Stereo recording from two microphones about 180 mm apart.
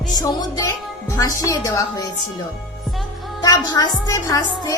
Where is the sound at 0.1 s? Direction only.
20° left (ahead or behind).